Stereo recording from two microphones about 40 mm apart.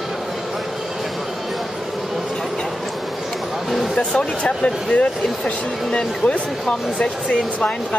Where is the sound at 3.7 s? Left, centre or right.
Centre.